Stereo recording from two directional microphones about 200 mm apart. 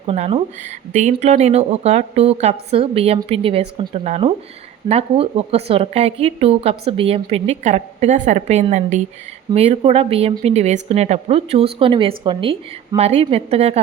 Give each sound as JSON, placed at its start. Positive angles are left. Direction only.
{"t": 0.0, "sound": "speech", "side_deg": -30}